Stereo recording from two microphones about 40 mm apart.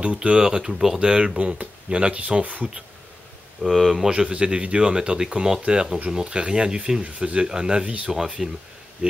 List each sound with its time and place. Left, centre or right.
0.0 s speech: right
0.4 s speech: centre; by 2.7 s right
3.7 s speech: centre
4.1 s speech: right
8.4 s speech: centre